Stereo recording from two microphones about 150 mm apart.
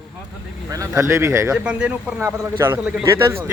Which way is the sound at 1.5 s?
5° right (ahead or behind).